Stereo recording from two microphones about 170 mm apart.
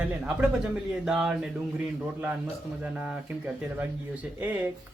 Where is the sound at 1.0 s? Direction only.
5° right (ahead or behind).